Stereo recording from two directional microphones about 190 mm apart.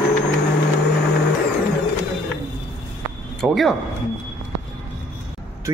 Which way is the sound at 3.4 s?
Centre (ahead or behind).